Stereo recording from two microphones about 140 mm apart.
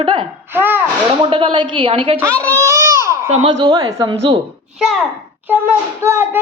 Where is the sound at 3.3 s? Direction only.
35° right (ahead or behind).